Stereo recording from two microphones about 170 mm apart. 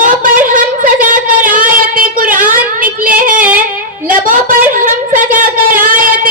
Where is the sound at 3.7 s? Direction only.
55° right (ahead or behind).